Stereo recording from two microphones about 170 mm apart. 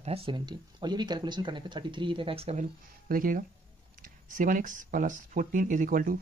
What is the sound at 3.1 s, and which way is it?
Speech, 55° right (ahead or behind).